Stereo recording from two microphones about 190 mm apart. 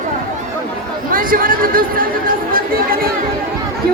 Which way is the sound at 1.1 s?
45° right (ahead or behind).